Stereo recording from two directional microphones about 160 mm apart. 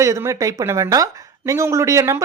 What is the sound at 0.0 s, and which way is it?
Speech, 20° right (ahead or behind).